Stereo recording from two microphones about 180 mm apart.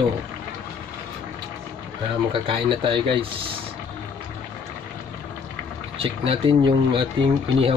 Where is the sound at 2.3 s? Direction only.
30° right (ahead or behind).